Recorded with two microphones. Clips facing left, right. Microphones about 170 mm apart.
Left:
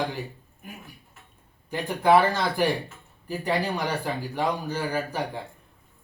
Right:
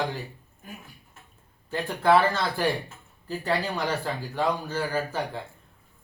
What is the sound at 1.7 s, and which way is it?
Speech, 15° left (ahead or behind).